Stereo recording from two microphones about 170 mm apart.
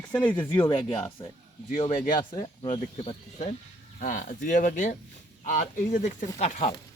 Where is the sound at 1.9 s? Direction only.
55° left (ahead or behind).